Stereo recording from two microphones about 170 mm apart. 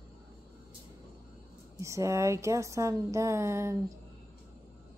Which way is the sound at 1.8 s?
15° right (ahead or behind).